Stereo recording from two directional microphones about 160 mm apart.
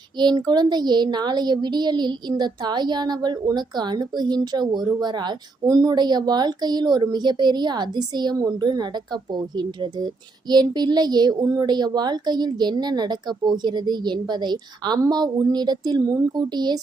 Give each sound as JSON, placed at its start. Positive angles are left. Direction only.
{"t": 0.2, "sound": "speech", "side_deg": -25}